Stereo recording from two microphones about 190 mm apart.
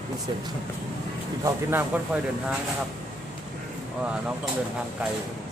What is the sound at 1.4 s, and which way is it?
Speech, 10° right (ahead or behind).